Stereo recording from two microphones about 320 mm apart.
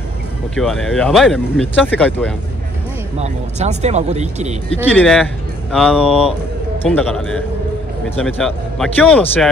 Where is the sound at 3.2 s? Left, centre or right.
Right.